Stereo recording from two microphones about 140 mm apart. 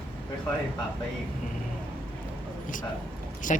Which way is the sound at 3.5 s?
60° left (ahead or behind).